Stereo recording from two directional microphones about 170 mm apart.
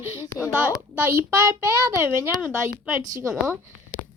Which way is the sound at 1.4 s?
20° right (ahead or behind).